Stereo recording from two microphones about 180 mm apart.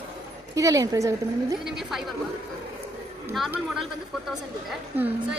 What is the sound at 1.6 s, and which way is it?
Speech, centre (ahead or behind).